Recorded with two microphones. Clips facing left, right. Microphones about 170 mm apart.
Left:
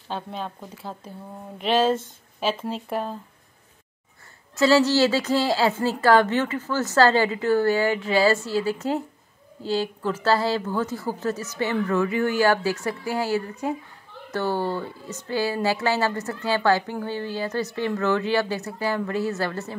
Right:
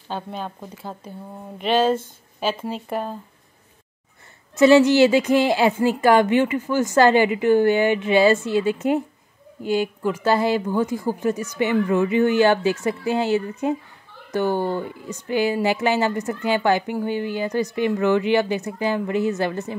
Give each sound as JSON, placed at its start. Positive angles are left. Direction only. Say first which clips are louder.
{"t": 0.1, "sound": "speech", "louder": "right 2 dB", "side_deg": 0}
{"t": 4.6, "sound": "a woman's voice", "louder": "right 5 dB", "side_deg": -20}